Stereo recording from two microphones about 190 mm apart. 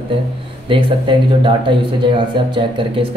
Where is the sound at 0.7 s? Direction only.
25° right (ahead or behind).